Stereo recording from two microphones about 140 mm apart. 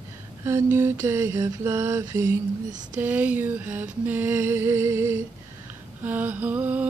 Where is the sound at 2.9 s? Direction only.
10° right (ahead or behind).